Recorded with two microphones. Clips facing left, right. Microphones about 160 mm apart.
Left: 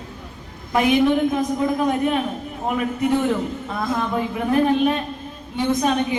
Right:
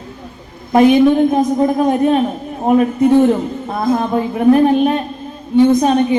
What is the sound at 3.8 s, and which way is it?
Speech, 40° right (ahead or behind).